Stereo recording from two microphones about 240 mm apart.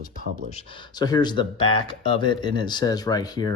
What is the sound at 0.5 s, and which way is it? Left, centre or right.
Speech, centre.